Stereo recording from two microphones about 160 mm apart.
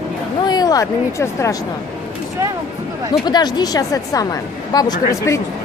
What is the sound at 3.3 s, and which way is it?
A woman's voice, 25° left (ahead or behind).